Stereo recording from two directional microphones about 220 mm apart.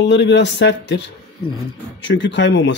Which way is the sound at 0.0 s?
55° left (ahead or behind).